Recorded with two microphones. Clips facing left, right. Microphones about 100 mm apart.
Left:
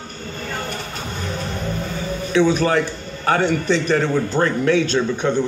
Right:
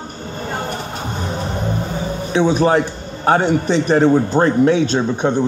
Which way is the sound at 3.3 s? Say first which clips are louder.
Right 3 dB; 25° right (ahead or behind).